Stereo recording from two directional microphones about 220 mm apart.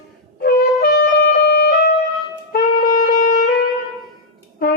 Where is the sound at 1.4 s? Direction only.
50° left (ahead or behind).